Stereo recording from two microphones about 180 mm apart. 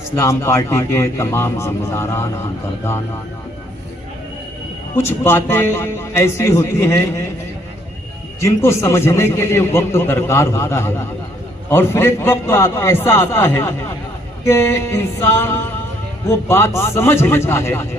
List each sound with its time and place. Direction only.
0.2 s a man's voice: 15° left (ahead or behind)
4.9 s a man's voice: 15° left (ahead or behind)
8.4 s a man's voice: 15° left (ahead or behind)